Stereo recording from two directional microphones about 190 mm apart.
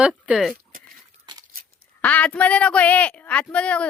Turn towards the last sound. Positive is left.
turn(degrees=5)  # may be behind; listen again after turning